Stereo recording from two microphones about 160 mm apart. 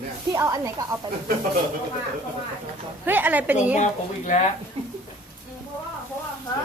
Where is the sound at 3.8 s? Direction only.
45° left (ahead or behind).